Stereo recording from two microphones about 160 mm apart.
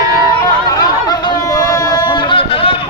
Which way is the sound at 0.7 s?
25° left (ahead or behind).